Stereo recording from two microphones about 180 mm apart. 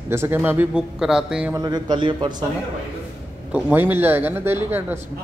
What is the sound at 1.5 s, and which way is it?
Speech, 25° right (ahead or behind).